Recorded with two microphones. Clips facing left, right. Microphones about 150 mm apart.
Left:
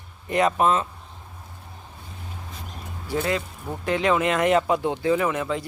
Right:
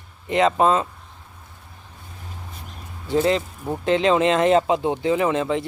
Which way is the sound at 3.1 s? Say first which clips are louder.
Right 6 dB; 25° right (ahead or behind).